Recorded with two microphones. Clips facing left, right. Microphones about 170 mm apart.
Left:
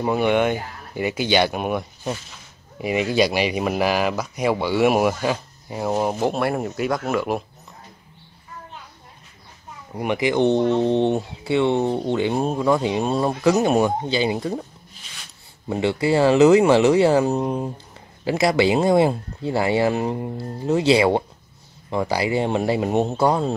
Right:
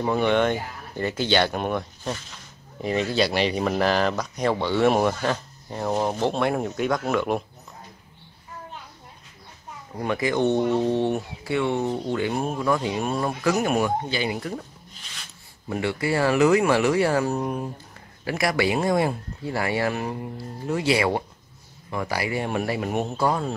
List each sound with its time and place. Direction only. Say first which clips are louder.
0.0 s speech: left 2 dB; 10° left (ahead or behind)
9.9 s speech: left 3 dB; 15° left (ahead or behind)
15.7 s speech: left 5 dB; 25° left (ahead or behind)